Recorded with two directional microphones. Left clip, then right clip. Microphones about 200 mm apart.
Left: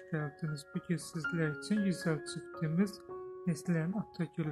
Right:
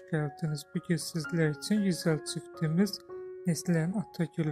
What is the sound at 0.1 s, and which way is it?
Speech, 25° right (ahead or behind).